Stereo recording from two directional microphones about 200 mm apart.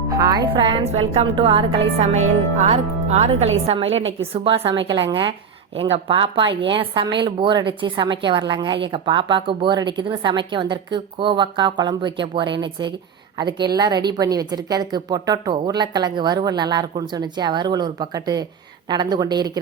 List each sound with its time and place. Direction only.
0.1 s a woman's voice: 20° right (ahead or behind)